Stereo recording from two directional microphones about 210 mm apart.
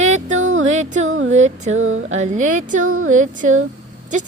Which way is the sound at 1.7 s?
70° right (ahead or behind).